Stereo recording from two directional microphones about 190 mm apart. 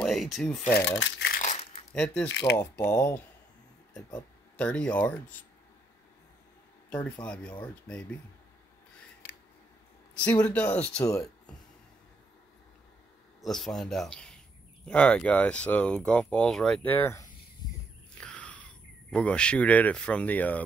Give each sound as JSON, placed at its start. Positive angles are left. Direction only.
{"t": 0.0, "sound": "speech", "side_deg": 0}
{"t": 0.7, "sound": "speech", "side_deg": 70}
{"t": 1.3, "sound": "crumpling", "side_deg": 40}
{"t": 2.2, "sound": "speech", "side_deg": 70}
{"t": 2.5, "sound": "speech", "side_deg": 10}
{"t": 4.6, "sound": "speech", "side_deg": 5}
{"t": 6.9, "sound": "speech", "side_deg": 10}
{"t": 10.4, "sound": "speech", "side_deg": 5}
{"t": 13.4, "sound": "speech", "side_deg": 0}
{"t": 18.1, "sound": "a sound", "side_deg": 5}